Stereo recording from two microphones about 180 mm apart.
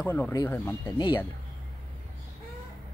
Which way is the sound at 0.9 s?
25° left (ahead or behind).